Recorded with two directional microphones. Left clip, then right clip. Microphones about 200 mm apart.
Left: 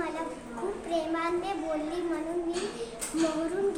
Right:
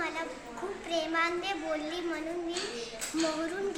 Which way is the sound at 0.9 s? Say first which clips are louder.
Right 1 dB; 5° right (ahead or behind).